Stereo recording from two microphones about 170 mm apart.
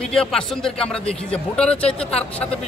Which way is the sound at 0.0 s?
5° left (ahead or behind).